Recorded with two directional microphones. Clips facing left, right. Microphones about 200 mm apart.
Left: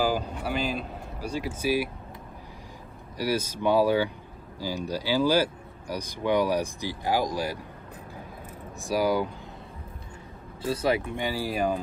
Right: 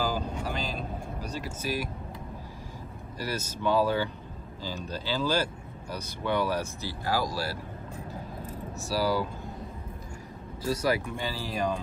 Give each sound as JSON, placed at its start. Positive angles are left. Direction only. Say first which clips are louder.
{"t": 0.0, "sound": "vehicle", "louder": "left 3 dB", "side_deg": 10}
{"t": 1.2, "sound": "speech", "louder": "left 8 dB", "side_deg": 10}
{"t": 3.2, "sound": "speech", "louder": "left 6 dB", "side_deg": 15}
{"t": 8.7, "sound": "speech", "louder": "left 3 dB", "side_deg": 15}
{"t": 10.6, "sound": "speech", "louder": "left 2 dB", "side_deg": 25}
{"t": 11.2, "sound": "speech", "louder": "left 4 dB", "side_deg": 10}